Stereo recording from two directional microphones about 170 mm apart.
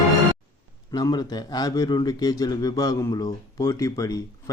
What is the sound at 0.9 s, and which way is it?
Speech, 25° left (ahead or behind).